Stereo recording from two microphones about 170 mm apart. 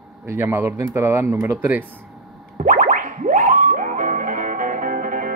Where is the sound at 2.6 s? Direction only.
50° right (ahead or behind).